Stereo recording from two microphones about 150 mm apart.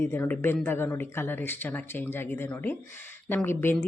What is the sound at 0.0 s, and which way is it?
Speech, 15° left (ahead or behind).